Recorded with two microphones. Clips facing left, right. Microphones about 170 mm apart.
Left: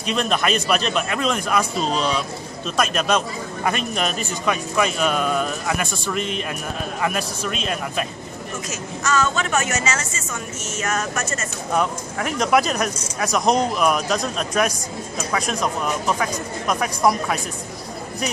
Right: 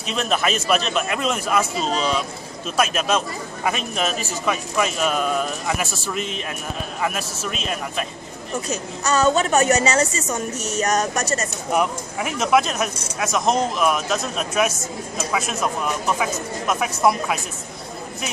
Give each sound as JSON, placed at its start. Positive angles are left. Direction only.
{"t": 0.0, "sound": "speech", "side_deg": 0}
{"t": 8.6, "sound": "a woman's voice", "side_deg": -35}
{"t": 11.7, "sound": "speech", "side_deg": -10}